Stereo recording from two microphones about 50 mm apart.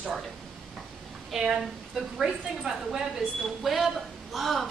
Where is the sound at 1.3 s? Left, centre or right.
Centre.